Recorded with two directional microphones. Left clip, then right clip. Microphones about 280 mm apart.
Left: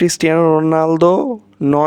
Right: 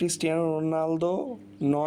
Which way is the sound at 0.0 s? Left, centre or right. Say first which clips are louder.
Left 13 dB; left.